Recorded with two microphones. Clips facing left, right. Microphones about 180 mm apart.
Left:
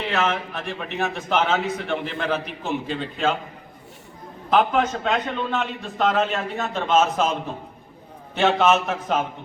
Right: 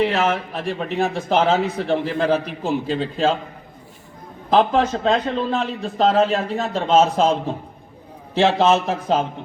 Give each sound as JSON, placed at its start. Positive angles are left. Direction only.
{"t": 0.1, "sound": "a man's voice", "side_deg": -30}
{"t": 4.4, "sound": "a man's voice", "side_deg": -30}
{"t": 8.4, "sound": "a man's voice", "side_deg": -30}